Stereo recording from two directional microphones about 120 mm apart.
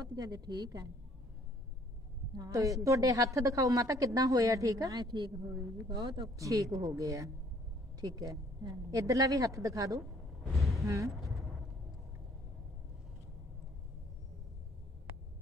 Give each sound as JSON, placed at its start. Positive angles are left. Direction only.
{"t": 0.0, "sound": "a woman's voice", "side_deg": -30}
{"t": 2.3, "sound": "a woman's voice", "side_deg": -30}
{"t": 5.9, "sound": "a woman's voice", "side_deg": -40}
{"t": 6.3, "sound": "a woman's voice", "side_deg": -25}
{"t": 10.5, "sound": "speech", "side_deg": 0}